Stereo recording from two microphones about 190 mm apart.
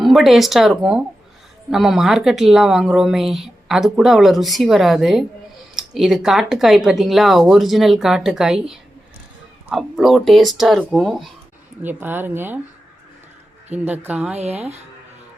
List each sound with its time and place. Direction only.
0.0 s a woman's voice: centre (ahead or behind)
13.7 s speech: 10° right (ahead or behind)
14.3 s speech: 35° right (ahead or behind)